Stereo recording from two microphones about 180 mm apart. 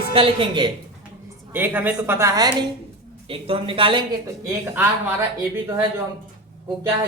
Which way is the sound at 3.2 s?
30° right (ahead or behind).